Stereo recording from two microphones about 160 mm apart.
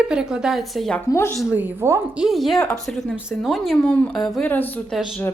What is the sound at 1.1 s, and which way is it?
Speech, 15° left (ahead or behind).